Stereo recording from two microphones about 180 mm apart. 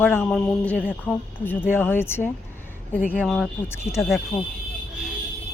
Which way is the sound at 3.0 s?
5° right (ahead or behind).